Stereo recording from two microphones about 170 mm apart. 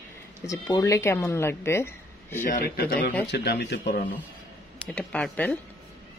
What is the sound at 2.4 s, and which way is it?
Speech, 55° left (ahead or behind).